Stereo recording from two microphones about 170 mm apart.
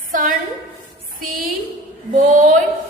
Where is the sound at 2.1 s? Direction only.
50° right (ahead or behind).